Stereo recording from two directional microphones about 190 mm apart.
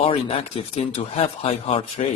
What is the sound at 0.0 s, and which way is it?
Speech, 30° left (ahead or behind).